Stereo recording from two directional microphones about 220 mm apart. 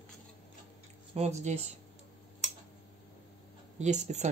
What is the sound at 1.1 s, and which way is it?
Speech, 30° right (ahead or behind).